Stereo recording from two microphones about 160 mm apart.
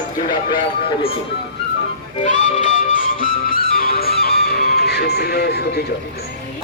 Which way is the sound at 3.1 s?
65° left (ahead or behind).